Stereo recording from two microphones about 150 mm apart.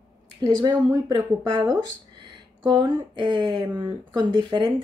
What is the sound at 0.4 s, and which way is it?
Speech, 30° right (ahead or behind).